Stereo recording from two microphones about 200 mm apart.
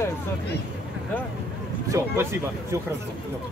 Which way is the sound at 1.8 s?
15° right (ahead or behind).